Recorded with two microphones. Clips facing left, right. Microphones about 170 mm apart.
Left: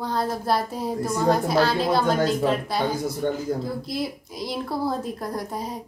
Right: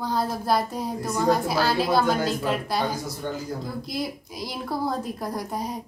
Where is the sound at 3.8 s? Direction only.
Centre (ahead or behind).